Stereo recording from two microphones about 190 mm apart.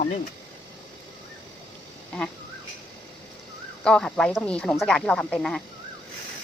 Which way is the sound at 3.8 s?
5° left (ahead or behind).